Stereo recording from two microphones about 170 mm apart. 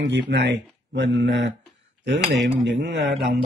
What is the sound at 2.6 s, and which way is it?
Speech, 90° right.